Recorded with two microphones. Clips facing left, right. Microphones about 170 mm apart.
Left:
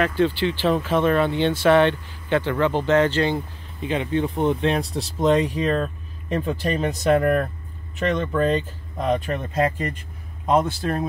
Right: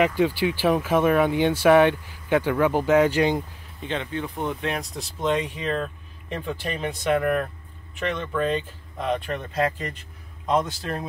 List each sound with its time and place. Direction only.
0.0 s speech: 10° right (ahead or behind)
3.8 s speech: 10° left (ahead or behind)
4.1 s speech: 25° left (ahead or behind); by 9.9 s 50° left (ahead or behind)